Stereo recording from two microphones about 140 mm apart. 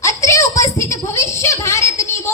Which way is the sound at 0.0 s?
20° left (ahead or behind).